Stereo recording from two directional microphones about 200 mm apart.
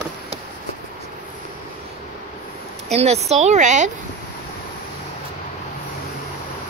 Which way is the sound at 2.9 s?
30° right (ahead or behind).